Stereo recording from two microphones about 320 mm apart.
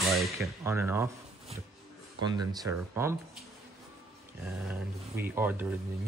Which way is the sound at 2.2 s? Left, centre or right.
Centre.